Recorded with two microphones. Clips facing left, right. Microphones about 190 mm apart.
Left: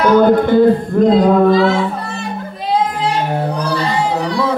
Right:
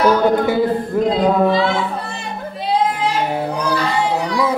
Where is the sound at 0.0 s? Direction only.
5° right (ahead or behind).